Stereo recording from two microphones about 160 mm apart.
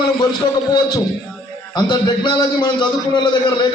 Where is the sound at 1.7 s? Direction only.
25° left (ahead or behind).